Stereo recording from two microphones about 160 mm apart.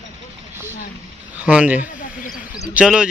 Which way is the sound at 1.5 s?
10° right (ahead or behind).